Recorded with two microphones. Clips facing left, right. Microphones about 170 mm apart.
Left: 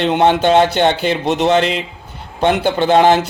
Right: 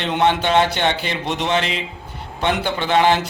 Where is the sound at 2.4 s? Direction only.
45° left (ahead or behind).